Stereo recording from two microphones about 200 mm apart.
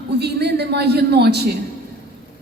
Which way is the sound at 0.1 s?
55° right (ahead or behind).